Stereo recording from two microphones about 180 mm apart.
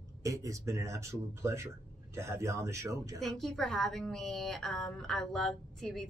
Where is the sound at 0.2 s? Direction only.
20° right (ahead or behind).